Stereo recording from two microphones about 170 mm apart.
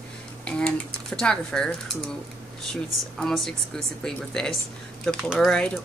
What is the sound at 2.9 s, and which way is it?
Speech, centre (ahead or behind).